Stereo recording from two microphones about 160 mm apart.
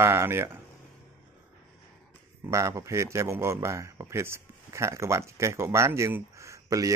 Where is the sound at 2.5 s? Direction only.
20° right (ahead or behind).